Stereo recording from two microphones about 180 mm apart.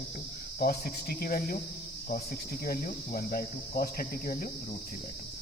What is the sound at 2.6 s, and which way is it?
Speech, 55° left (ahead or behind).